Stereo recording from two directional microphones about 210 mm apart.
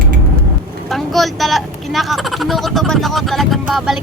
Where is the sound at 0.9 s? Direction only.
Centre (ahead or behind).